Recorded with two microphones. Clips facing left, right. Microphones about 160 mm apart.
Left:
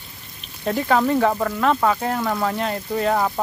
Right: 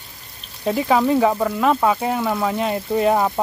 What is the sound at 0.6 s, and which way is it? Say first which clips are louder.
Speech: right 2 dB; 10° right (ahead or behind).